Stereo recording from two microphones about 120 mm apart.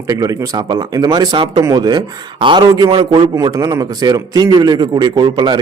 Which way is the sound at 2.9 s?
45° right (ahead or behind).